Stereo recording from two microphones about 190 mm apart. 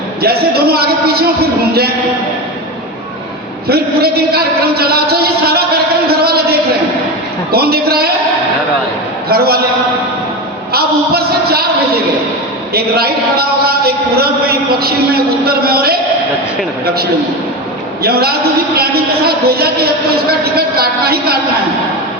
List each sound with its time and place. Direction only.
0.2 s a man's voice: 55° right (ahead or behind)
3.7 s a man's voice: 55° right (ahead or behind)
9.3 s a man's voice: 55° right (ahead or behind)
10.7 s a sound: 55° right (ahead or behind)
12.7 s a man's voice: 55° right (ahead or behind)